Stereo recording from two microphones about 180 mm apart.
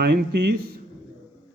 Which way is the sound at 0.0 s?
60° right (ahead or behind).